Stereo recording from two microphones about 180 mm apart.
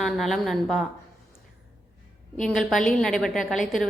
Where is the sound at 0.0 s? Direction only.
Centre (ahead or behind).